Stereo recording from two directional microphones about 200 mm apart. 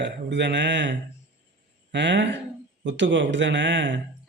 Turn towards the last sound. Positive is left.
turn(degrees=-65)  # may be behind; listen again after turning